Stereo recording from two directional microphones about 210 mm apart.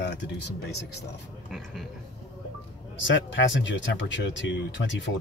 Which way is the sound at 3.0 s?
60° left (ahead or behind).